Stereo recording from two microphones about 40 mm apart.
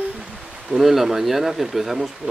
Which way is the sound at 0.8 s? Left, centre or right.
Centre.